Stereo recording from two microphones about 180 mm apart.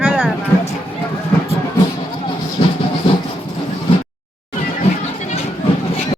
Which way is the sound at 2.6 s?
30° left (ahead or behind).